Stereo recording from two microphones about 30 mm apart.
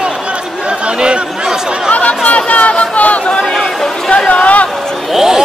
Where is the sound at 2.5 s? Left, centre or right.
Left.